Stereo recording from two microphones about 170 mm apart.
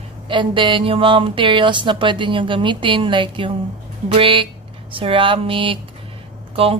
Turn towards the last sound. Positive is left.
turn(degrees=-35)  # may be behind; listen again after turning